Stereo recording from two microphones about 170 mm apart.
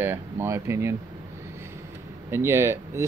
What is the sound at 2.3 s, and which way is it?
Speech, 15° right (ahead or behind).